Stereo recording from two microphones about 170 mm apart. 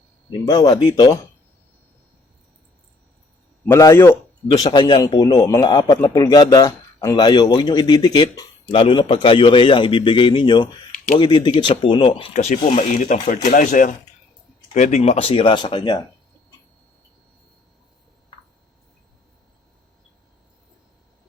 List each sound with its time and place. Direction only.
0.3 s a man's voice: 25° left (ahead or behind)
3.7 s a man's voice: 15° left (ahead or behind)